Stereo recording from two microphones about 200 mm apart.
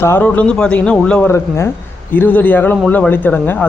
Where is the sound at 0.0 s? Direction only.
10° left (ahead or behind).